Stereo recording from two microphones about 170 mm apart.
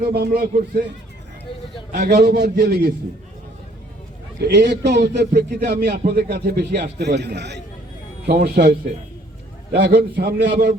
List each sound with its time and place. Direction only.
0.0 s speech: 60° right (ahead or behind)
2.0 s speech: 70° right (ahead or behind)
4.4 s speech: 75° right (ahead or behind)
8.3 s speech: 65° right (ahead or behind)
9.7 s speech: 70° right (ahead or behind)